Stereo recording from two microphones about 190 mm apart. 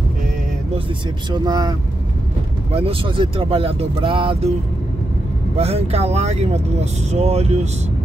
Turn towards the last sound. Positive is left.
turn(degrees=-35)  # may be behind; listen again after turning